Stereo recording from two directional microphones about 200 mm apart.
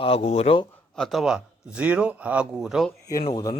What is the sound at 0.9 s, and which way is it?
Speech, centre (ahead or behind).